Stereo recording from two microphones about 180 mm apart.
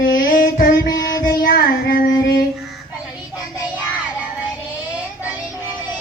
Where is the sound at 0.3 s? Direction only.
55° left (ahead or behind).